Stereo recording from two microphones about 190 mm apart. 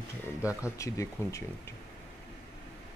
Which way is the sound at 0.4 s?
5° right (ahead or behind).